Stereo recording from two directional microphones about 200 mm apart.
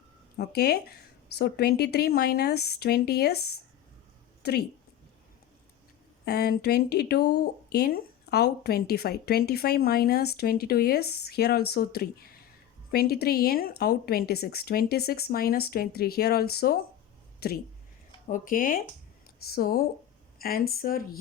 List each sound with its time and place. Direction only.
0.3 s speech: 55° left (ahead or behind)
6.2 s speech: 50° left (ahead or behind)